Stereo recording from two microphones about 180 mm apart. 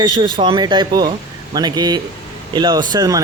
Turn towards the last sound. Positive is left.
turn(degrees=-20)  # may be behind; listen again after turning